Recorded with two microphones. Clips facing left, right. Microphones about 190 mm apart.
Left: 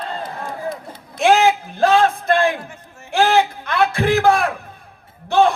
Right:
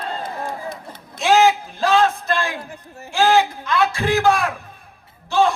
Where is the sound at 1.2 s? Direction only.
55° left (ahead or behind).